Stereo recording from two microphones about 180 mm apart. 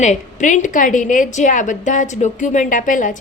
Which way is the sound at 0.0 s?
40° left (ahead or behind).